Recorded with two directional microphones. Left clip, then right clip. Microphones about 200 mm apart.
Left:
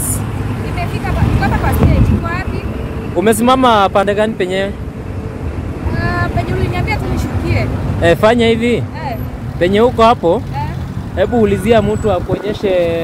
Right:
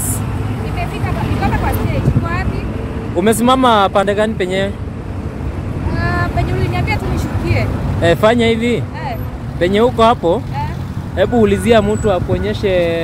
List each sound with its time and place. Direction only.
3.2 s speech: 5° left (ahead or behind)
5.9 s vehicle: 5° left (ahead or behind)
9.6 s speech: 10° left (ahead or behind)
11.1 s speech: 5° right (ahead or behind)